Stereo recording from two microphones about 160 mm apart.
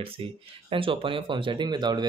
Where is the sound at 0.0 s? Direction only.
35° right (ahead or behind).